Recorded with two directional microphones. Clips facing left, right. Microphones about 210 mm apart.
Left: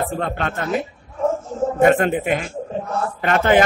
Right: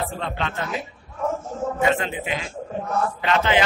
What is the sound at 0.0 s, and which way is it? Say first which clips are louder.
A man's voice: left 5 dB; 50° left (ahead or behind).